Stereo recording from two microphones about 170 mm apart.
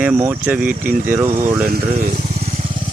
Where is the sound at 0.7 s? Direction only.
50° right (ahead or behind).